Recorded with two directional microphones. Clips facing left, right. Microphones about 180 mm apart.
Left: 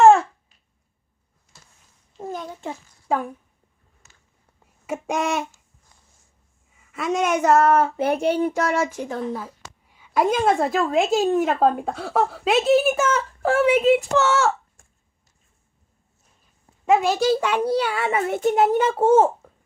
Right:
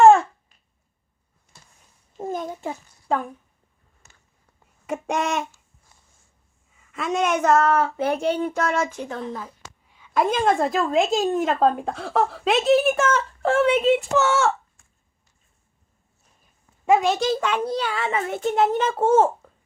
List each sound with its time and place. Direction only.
0.0 s babbling: 5° left (ahead or behind)
2.1 s a sound: 20° right (ahead or behind)
2.5 s a sound: 10° right (ahead or behind)
4.9 s a woman's voice: 5° left (ahead or behind)
6.9 s a child's voice: 5° left (ahead or behind)
14.8 s chopping: 50° left (ahead or behind)
16.8 s a child's voice: centre (ahead or behind)